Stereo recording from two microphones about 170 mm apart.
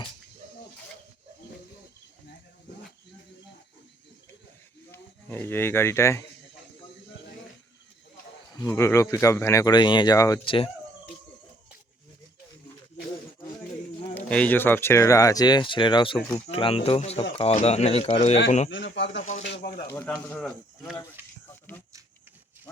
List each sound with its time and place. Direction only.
4.9 s speech: 10° left (ahead or behind)
8.5 s speech: 20° left (ahead or behind)
10.4 s speech: 30° left (ahead or behind)
14.2 s speech: 10° left (ahead or behind); by 18.3 s 35° left (ahead or behind)
18.9 s speech: 90° left
19.2 s a sound: 45° left (ahead or behind)
19.5 s speech: 80° left
19.8 s speech: 15° left (ahead or behind)